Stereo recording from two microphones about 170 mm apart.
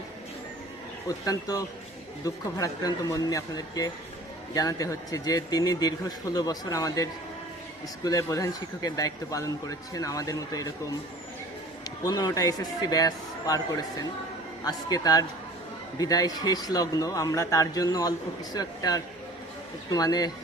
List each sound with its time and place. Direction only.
1.0 s speech: 20° left (ahead or behind)
12.0 s speech: 20° left (ahead or behind)